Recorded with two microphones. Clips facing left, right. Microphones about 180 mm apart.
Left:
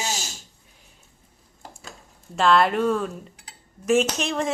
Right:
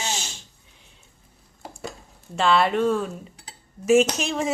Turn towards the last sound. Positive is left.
turn(degrees=0)  # may be behind; listen again after turning